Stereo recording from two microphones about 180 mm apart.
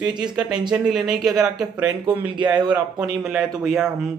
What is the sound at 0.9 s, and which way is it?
Speech, centre (ahead or behind).